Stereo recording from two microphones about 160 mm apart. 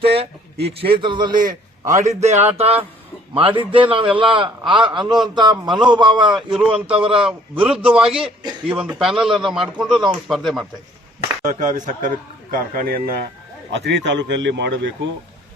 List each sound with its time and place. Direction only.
0.0 s a man's voice: 35° right (ahead or behind); by 2.0 s 20° right (ahead or behind)
2.0 s a man's voice: 45° right (ahead or behind)
7.2 s speech: 5° right (ahead or behind)
11.4 s a man's voice: 50° right (ahead or behind); by 13.2 s 70° right (ahead or behind)
13.7 s a man's voice: 90° right